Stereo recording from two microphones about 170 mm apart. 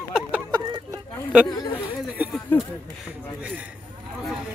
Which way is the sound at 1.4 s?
25° left (ahead or behind).